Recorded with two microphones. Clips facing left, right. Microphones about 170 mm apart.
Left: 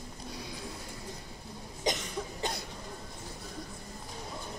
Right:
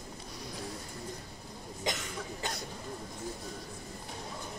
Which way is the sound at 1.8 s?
20° left (ahead or behind).